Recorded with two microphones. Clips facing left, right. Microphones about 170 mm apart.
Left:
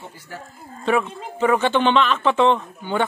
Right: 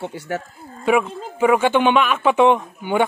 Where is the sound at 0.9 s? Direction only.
10° right (ahead or behind).